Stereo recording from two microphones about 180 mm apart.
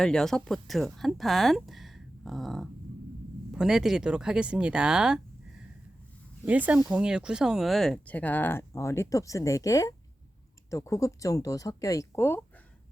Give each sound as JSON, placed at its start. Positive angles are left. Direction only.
{"t": 0.0, "sound": "speech", "side_deg": 5}